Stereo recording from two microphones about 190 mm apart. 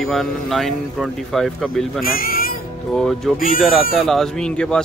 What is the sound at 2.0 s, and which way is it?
Speech, 50° left (ahead or behind).